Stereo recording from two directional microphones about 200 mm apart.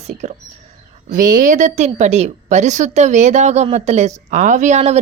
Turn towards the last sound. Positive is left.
turn(degrees=-35)  # may be behind; listen again after turning